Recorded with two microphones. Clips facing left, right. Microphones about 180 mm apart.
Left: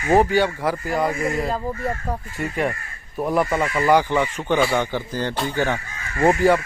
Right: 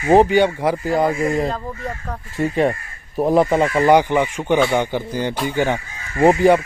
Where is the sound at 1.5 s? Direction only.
10° left (ahead or behind).